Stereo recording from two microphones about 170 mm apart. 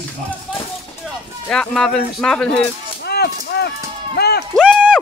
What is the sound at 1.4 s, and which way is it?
Speech, 5° left (ahead or behind).